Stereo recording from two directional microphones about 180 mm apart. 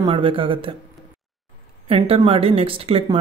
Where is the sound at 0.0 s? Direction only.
30° right (ahead or behind).